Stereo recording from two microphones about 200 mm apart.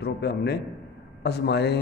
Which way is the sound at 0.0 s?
55° left (ahead or behind).